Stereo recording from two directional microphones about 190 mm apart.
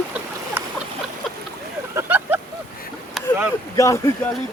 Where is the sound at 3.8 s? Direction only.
15° left (ahead or behind).